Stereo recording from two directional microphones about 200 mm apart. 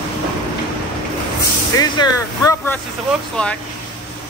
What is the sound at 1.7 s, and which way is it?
Speech, 20° left (ahead or behind).